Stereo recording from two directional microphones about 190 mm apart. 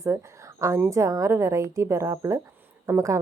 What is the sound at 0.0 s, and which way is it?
A woman's voice, 15° right (ahead or behind).